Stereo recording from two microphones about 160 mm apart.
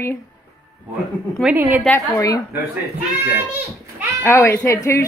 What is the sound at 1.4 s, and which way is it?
Speech, 10° right (ahead or behind).